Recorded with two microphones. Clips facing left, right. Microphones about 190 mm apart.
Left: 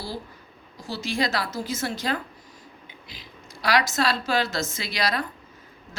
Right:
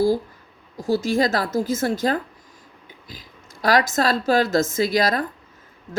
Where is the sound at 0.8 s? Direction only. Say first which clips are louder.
Right 8 dB; 50° right (ahead or behind).